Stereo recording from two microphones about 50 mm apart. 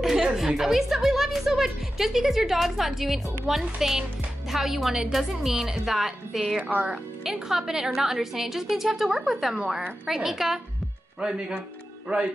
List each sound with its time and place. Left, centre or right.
0.0 s chuckle: centre
0.6 s a woman's voice: centre
12.1 s speech: right